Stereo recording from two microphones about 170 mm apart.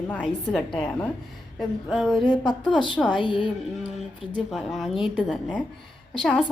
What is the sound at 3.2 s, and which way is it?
Speech, 30° left (ahead or behind).